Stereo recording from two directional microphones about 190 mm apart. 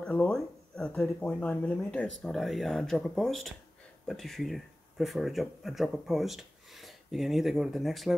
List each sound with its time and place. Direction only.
0.0 s speech: 5° left (ahead or behind)